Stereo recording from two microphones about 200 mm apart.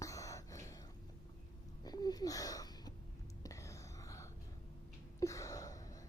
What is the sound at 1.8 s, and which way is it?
Wheeze, 20° left (ahead or behind).